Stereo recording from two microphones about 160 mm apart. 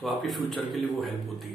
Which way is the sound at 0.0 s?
Centre (ahead or behind).